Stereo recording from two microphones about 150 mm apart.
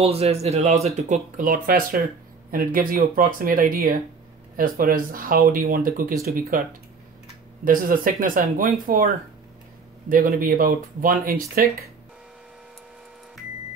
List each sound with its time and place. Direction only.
0.0 s a man's voice: 45° right (ahead or behind); by 6.6 s 70° right (ahead or behind)
7.6 s speech: 65° right (ahead or behind)